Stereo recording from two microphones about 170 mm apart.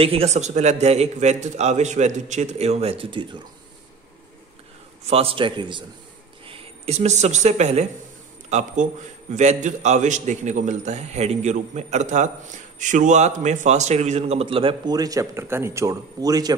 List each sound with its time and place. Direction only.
0.0 s a man's voice: 35° right (ahead or behind)
5.0 s a man's voice: 35° right (ahead or behind)